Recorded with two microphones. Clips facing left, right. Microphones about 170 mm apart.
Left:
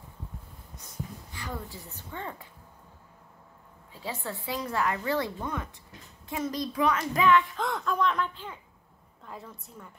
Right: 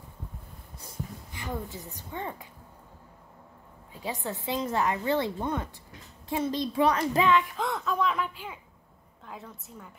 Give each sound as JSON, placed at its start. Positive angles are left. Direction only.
{"t": 1.3, "sound": "a woman's voice", "side_deg": -20}
{"t": 4.0, "sound": "a woman's voice", "side_deg": -15}
{"t": 7.5, "sound": "a woman's voice", "side_deg": 0}